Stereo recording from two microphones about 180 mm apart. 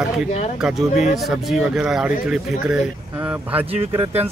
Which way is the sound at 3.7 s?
30° right (ahead or behind).